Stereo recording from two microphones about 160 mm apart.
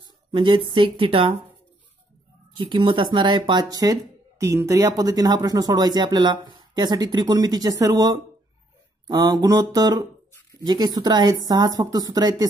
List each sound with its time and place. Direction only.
0.3 s a woman's voice: 30° right (ahead or behind)
2.5 s speech: 30° right (ahead or behind)